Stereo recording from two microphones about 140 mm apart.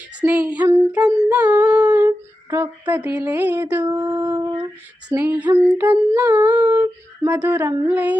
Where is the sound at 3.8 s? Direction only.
20° right (ahead or behind).